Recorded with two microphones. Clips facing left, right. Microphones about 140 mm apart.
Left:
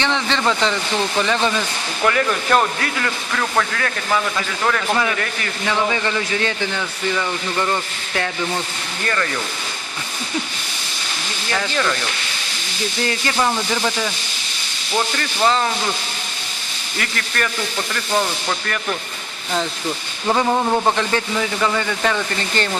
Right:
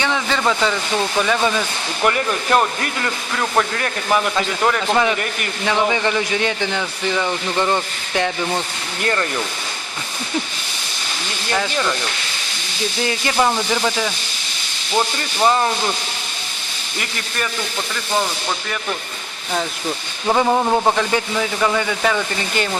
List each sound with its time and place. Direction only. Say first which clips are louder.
0.0 s speech: even; 5° right (ahead or behind)
2.0 s speech: left 1 dB; 20° right (ahead or behind)
11.5 s speech: right 1 dB; 15° right (ahead or behind)
13.1 s speech: right 2 dB; 15° right (ahead or behind)
17.0 s speech: left 2 dB; 10° right (ahead or behind)
20.2 s speech: right 1 dB; 10° right (ahead or behind)